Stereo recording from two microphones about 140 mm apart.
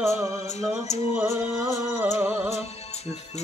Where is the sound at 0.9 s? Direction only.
50° left (ahead or behind).